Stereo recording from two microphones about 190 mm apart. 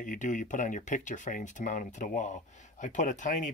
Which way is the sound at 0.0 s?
40° left (ahead or behind).